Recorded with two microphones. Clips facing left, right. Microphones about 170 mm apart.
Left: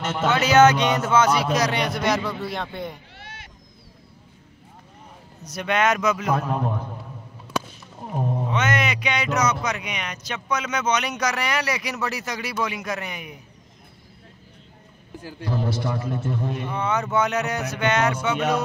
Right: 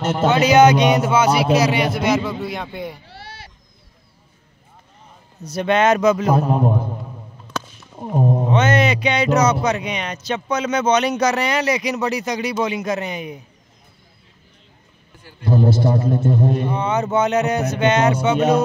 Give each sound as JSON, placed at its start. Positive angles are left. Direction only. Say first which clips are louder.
{"t": 0.3, "sound": "a man's voice", "louder": "right 3 dB", "side_deg": -15}
{"t": 3.1, "sound": "a sound", "louder": "right 5 dB", "side_deg": -35}
{"t": 5.4, "sound": "speech", "louder": "right 5 dB", "side_deg": -30}
{"t": 7.5, "sound": "a sound", "louder": "left 1 dB", "side_deg": 10}
{"t": 8.2, "sound": "speech", "louder": "right 7 dB", "side_deg": -30}
{"t": 15.4, "sound": "a man's voice", "louder": "right 9 dB", "side_deg": -30}
{"t": 16.7, "sound": "speech", "louder": "right 4 dB", "side_deg": -20}